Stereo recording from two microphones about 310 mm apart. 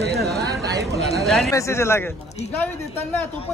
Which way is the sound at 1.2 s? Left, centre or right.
Centre.